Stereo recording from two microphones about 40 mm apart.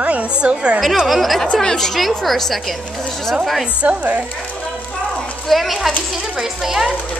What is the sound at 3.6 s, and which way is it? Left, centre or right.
Speech, right.